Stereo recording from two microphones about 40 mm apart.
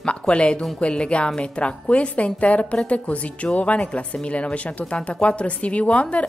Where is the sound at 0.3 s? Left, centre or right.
Left.